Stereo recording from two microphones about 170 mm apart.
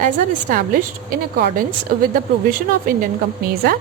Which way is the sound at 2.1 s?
55° right (ahead or behind).